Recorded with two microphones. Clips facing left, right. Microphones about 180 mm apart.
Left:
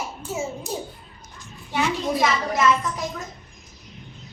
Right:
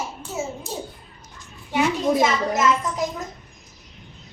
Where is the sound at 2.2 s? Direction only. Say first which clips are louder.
Right 2 dB; 20° right (ahead or behind).